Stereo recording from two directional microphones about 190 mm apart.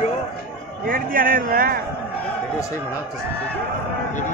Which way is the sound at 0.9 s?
50° right (ahead or behind).